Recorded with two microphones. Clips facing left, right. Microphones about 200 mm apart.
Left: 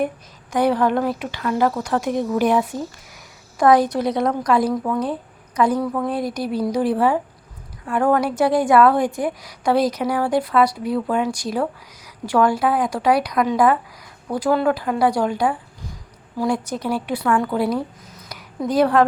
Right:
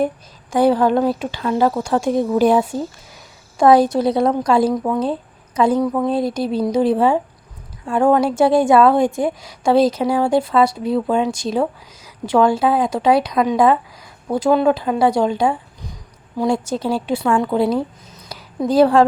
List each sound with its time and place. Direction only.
0.5 s a woman's voice: 30° right (ahead or behind)